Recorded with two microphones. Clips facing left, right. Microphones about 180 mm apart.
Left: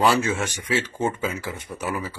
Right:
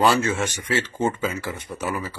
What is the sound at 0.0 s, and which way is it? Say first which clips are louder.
Speech: right 1 dB; 5° left (ahead or behind).